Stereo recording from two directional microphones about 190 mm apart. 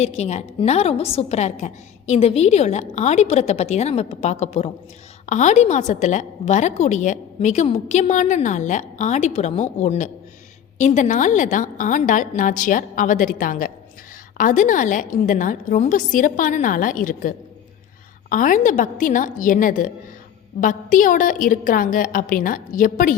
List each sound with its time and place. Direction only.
0.0 s a woman's voice: 35° left (ahead or behind)